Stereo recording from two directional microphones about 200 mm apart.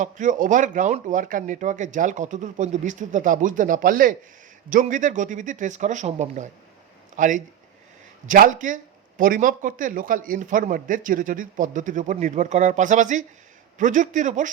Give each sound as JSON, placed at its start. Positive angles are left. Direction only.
{"t": 0.0, "sound": "speech", "side_deg": -40}